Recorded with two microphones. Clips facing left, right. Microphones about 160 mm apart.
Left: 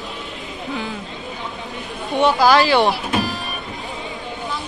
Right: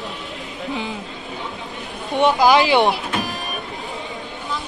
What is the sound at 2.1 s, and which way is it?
Speech, 20° right (ahead or behind).